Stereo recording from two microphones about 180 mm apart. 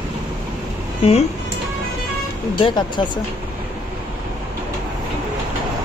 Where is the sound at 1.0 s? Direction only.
30° left (ahead or behind).